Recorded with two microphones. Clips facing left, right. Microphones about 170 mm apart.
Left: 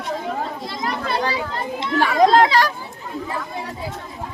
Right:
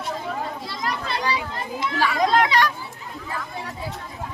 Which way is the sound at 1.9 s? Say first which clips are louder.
Left 5 dB; 55° left (ahead or behind).